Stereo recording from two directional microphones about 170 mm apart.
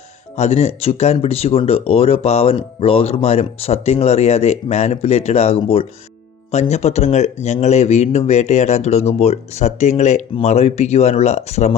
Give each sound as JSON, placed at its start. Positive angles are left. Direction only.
{"t": 0.3, "sound": "speech", "side_deg": 40}